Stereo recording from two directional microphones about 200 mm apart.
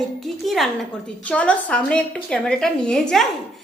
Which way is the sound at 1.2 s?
5° left (ahead or behind).